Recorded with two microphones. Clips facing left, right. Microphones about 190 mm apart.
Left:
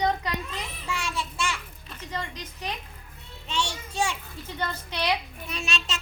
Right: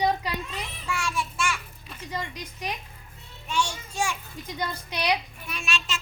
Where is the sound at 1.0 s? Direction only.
20° left (ahead or behind).